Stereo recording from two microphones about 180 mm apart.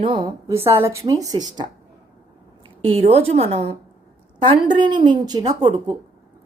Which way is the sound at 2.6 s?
30° right (ahead or behind).